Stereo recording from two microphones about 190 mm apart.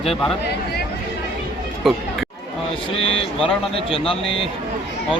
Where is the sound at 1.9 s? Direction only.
Centre (ahead or behind).